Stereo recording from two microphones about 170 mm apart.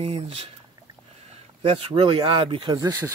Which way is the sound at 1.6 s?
35° right (ahead or behind).